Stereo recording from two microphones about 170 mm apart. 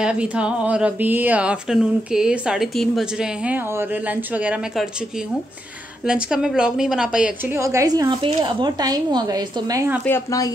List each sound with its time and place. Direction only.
0.0 s speech: 5° right (ahead or behind)
6.0 s a woman's voice: 5° right (ahead or behind); by 9.8 s 20° right (ahead or behind)
10.0 s speech: 15° left (ahead or behind)